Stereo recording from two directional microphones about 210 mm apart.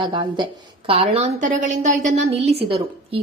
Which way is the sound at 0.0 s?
25° right (ahead or behind).